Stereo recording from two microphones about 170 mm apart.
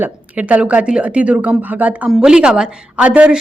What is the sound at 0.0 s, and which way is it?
Speech, 10° right (ahead or behind).